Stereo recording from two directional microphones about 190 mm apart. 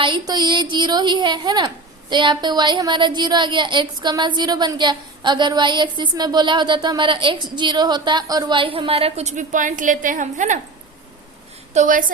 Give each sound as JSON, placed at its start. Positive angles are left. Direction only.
{"t": 0.0, "sound": "a woman's voice", "side_deg": -25}
{"t": 11.7, "sound": "a woman's voice", "side_deg": -40}